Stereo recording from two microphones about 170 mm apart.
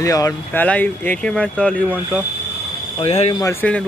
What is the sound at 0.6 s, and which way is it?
Speech, 10° left (ahead or behind).